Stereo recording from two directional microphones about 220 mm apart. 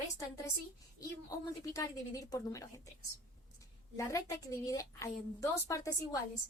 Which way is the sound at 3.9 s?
15° left (ahead or behind).